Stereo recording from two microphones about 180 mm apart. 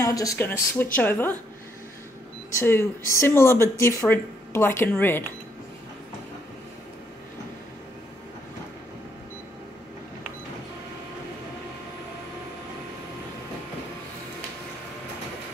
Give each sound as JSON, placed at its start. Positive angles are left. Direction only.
{"t": 0.0, "sound": "speech", "side_deg": 20}
{"t": 2.6, "sound": "speech", "side_deg": 15}